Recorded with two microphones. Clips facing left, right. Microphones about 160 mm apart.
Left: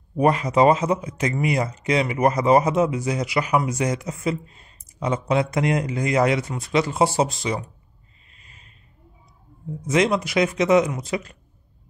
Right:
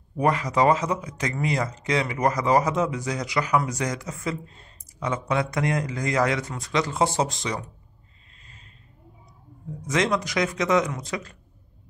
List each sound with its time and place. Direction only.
0.2 s speech: 25° left (ahead or behind)
9.8 s speech: 20° left (ahead or behind)